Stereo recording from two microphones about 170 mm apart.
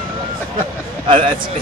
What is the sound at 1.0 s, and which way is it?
Speech, 30° right (ahead or behind).